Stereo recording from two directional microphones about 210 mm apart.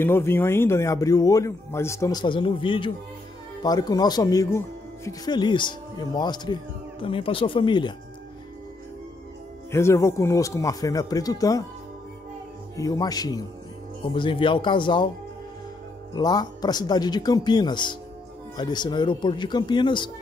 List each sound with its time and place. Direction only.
0.0 s speech: 10° left (ahead or behind)
9.7 s speech: 15° left (ahead or behind)
12.7 s speech: 15° left (ahead or behind)
16.2 s speech: 20° left (ahead or behind)